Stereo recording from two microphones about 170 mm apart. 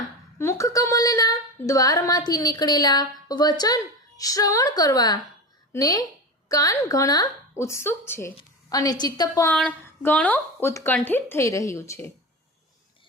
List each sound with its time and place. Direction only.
0.3 s female singing: 15° left (ahead or behind)
9.5 s speech: 5° left (ahead or behind)